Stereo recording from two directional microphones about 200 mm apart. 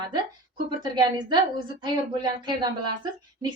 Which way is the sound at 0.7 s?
20° right (ahead or behind).